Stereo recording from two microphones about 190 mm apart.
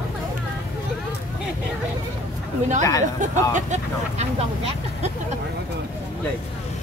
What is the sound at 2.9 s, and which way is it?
Speech, 20° left (ahead or behind).